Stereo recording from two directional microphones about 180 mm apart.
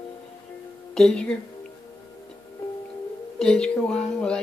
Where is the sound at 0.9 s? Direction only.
5° left (ahead or behind).